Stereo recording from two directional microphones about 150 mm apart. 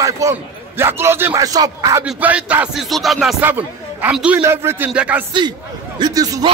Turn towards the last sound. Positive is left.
turn(degrees=-25)  # may be behind; listen again after turning